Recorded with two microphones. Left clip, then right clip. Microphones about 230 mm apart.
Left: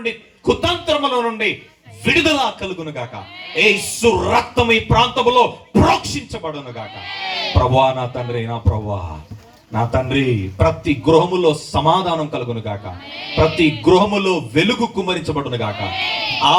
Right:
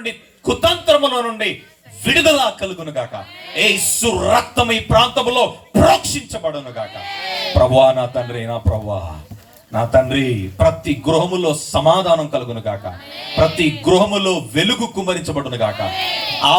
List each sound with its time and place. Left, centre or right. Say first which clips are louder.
0.0 s speech: left 2 dB; right
9.7 s speech: right 4 dB; right